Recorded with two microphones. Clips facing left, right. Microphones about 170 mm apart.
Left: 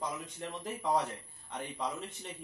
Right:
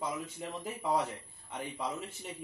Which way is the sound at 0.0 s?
5° right (ahead or behind).